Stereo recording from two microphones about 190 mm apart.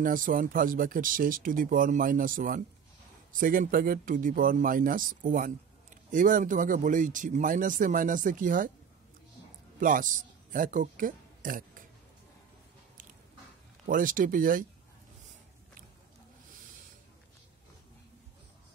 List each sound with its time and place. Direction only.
0.0 s speech: 45° right (ahead or behind)
9.8 s a man's voice: 45° right (ahead or behind)
13.8 s speech: 45° right (ahead or behind)